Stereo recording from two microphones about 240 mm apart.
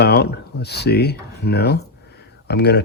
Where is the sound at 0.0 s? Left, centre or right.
Left.